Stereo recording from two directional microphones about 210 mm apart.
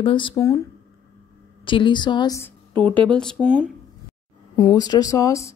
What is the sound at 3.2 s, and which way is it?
Speech, centre (ahead or behind).